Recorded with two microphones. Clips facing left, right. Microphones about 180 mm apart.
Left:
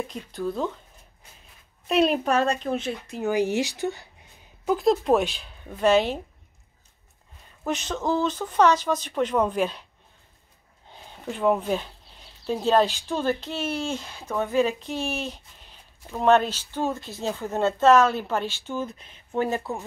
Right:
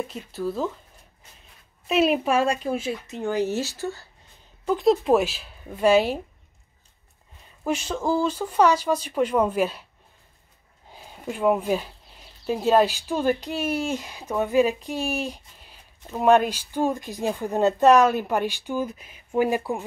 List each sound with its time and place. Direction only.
0.1 s speech: 5° right (ahead or behind)
1.9 s speech: 5° right (ahead or behind)
3.3 s speech: 15° left (ahead or behind)
4.6 s speech: centre (ahead or behind)
7.6 s speech: 10° right (ahead or behind)
10.9 s speech: 5° right (ahead or behind)